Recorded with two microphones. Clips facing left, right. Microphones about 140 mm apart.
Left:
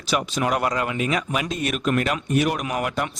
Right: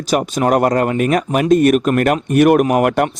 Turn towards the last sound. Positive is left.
turn(degrees=-60)  # may be behind; listen again after turning